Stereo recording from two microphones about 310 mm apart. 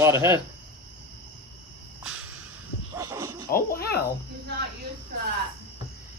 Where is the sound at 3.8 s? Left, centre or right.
Left.